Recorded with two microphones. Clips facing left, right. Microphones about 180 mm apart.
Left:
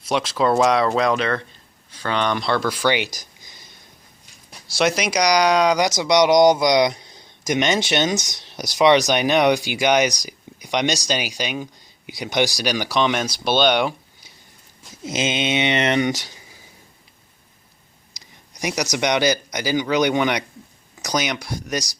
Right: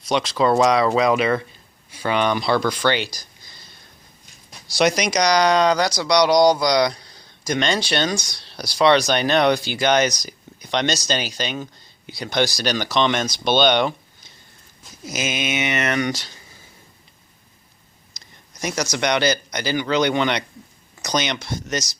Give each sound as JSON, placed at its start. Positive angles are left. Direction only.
{"t": 0.1, "sound": "speech", "side_deg": 5}
{"t": 4.7, "sound": "speech", "side_deg": 0}
{"t": 15.0, "sound": "speech", "side_deg": 25}
{"t": 18.2, "sound": "speech", "side_deg": 15}